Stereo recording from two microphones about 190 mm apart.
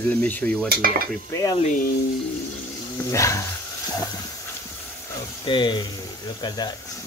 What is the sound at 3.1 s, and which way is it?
Speech, 15° left (ahead or behind).